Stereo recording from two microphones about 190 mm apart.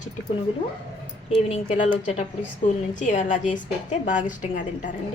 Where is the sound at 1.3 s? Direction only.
35° left (ahead or behind).